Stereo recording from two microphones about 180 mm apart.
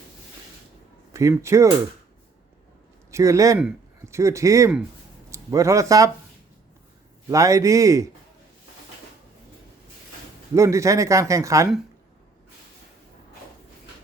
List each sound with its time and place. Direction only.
1.1 s speech: 15° right (ahead or behind)
3.1 s speech: 15° right (ahead or behind)
7.3 s speech: 20° right (ahead or behind)
10.5 s speech: 15° right (ahead or behind)